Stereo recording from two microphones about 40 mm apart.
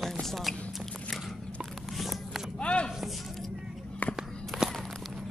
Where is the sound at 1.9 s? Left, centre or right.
Centre.